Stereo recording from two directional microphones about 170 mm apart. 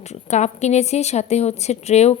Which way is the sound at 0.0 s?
40° left (ahead or behind).